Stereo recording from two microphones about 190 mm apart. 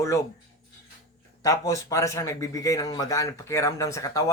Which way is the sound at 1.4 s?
20° left (ahead or behind).